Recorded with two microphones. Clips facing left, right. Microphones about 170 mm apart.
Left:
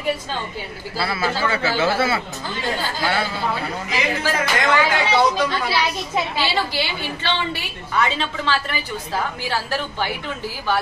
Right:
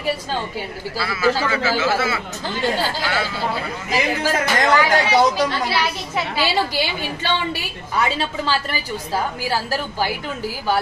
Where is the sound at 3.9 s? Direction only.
45° right (ahead or behind).